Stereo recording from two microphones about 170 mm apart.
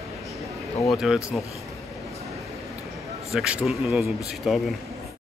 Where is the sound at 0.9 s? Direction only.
Centre (ahead or behind).